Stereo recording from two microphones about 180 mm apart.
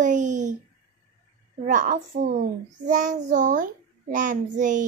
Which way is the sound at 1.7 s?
45° right (ahead or behind).